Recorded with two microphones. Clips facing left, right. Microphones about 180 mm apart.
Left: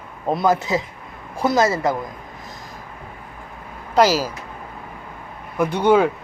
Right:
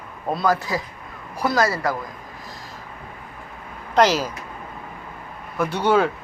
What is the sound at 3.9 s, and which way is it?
Speech, 10° left (ahead or behind).